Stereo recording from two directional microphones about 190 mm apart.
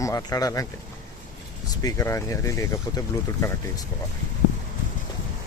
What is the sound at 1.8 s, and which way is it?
Speech, 15° left (ahead or behind).